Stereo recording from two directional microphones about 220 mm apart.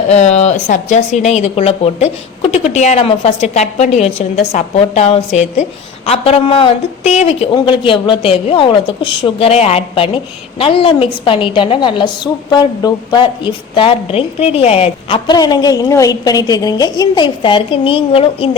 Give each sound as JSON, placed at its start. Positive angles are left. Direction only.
{"t": 0.1, "sound": "a woman's voice", "side_deg": 30}